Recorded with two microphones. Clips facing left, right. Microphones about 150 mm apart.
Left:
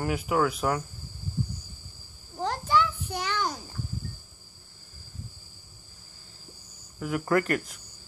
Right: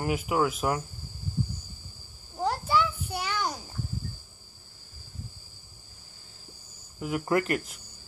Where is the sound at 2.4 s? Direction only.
10° right (ahead or behind).